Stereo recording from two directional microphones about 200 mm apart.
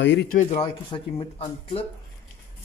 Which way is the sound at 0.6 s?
25° left (ahead or behind).